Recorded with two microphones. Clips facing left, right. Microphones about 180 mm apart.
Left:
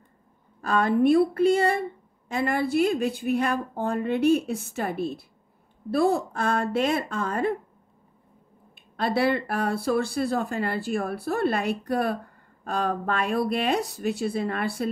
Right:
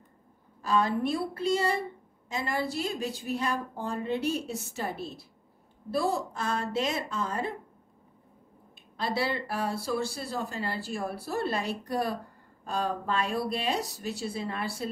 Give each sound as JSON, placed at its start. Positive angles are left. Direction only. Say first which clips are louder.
{"t": 0.6, "sound": "a woman's voice", "louder": "left 5 dB", "side_deg": 55}
{"t": 8.7, "sound": "a woman's voice", "louder": "left 5 dB", "side_deg": 60}